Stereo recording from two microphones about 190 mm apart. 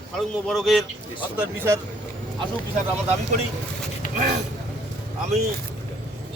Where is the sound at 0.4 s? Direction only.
Centre (ahead or behind).